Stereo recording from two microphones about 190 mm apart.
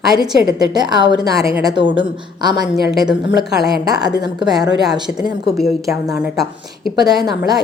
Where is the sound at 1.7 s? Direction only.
65° left (ahead or behind).